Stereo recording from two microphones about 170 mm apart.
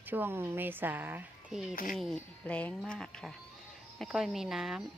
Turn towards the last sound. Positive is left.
turn(degrees=0)  # may be behind; listen again after turning